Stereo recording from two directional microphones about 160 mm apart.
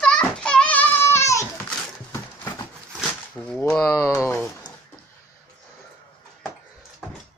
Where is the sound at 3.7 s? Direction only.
5° left (ahead or behind).